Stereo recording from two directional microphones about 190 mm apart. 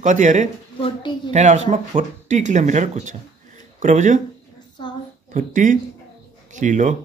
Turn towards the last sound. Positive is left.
turn(degrees=-40)  # may be behind; listen again after turning